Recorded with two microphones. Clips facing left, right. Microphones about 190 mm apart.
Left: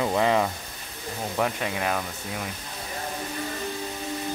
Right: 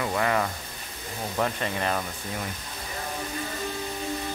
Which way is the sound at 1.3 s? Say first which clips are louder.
Left 1 dB; 5° left (ahead or behind).